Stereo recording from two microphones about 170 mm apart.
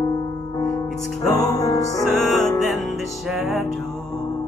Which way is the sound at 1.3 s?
20° left (ahead or behind).